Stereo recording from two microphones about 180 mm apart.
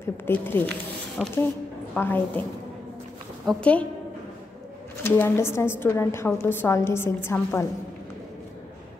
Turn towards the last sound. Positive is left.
turn(degrees=15)  # may be behind; listen again after turning